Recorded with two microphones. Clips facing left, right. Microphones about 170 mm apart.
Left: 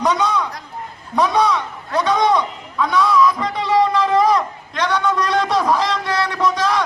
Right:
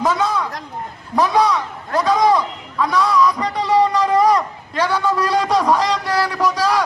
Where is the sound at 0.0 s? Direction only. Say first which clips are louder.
Even; 5° right (ahead or behind).